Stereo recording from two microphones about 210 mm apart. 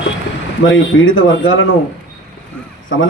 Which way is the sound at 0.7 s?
70° left (ahead or behind).